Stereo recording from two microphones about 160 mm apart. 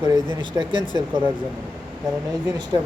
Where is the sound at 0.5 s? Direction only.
30° right (ahead or behind).